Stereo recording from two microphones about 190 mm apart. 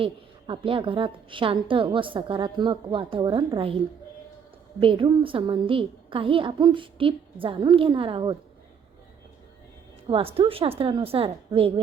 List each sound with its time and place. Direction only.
0.0 s a woman's voice: 25° right (ahead or behind)
4.8 s a woman's voice: 25° right (ahead or behind)
10.1 s a woman's voice: 30° right (ahead or behind)